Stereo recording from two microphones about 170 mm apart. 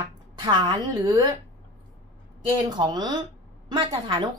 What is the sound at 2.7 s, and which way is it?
A woman's voice, 25° right (ahead or behind).